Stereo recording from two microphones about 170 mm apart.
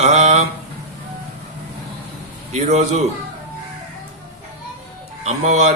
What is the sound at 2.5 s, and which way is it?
Mantra, 40° right (ahead or behind).